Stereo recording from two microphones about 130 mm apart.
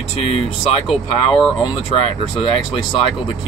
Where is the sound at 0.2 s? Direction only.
50° left (ahead or behind).